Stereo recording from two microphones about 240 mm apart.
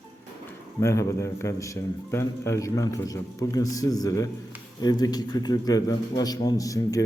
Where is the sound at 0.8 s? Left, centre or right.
Centre.